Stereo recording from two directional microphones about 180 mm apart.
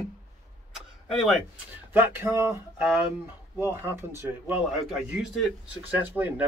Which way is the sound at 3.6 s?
10° right (ahead or behind).